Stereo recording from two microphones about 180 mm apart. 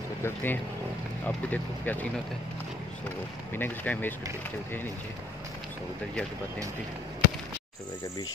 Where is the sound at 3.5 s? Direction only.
10° left (ahead or behind).